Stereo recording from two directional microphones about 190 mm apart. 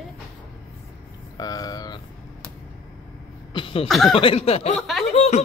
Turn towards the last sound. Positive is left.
turn(degrees=35)  # may be behind; listen again after turning